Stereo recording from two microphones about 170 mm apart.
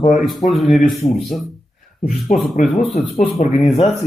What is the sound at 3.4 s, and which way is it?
Speech, 35° left (ahead or behind).